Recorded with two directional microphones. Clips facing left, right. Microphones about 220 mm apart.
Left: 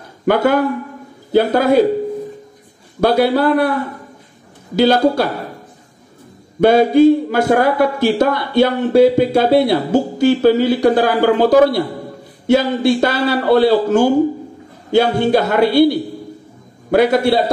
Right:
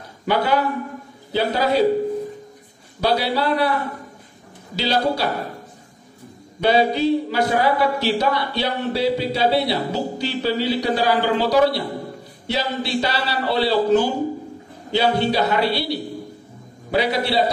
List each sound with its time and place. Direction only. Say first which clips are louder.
0.2 s speech: left 6 dB; 50° left (ahead or behind)
3.0 s speech: left 7 dB; 50° left (ahead or behind)
4.7 s speech: left 9 dB; 50° left (ahead or behind)
6.6 s speech: left 8 dB; 50° left (ahead or behind)